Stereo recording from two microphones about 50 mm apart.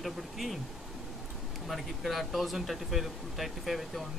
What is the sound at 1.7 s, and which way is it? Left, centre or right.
Speech, centre.